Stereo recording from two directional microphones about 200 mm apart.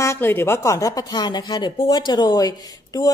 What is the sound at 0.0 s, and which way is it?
A woman's voice, 10° left (ahead or behind).